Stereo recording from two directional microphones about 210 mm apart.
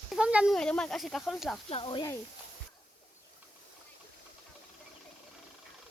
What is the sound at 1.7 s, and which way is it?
Speech, 25° left (ahead or behind).